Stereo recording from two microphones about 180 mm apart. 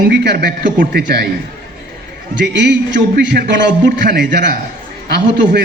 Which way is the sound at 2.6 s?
75° right (ahead or behind).